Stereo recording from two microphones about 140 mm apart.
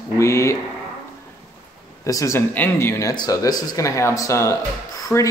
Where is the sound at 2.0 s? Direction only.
20° left (ahead or behind).